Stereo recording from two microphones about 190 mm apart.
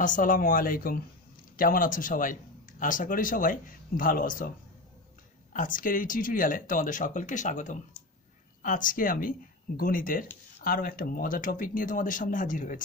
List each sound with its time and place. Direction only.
0.0 s speech: 45° left (ahead or behind)
5.5 s speech: 45° left (ahead or behind)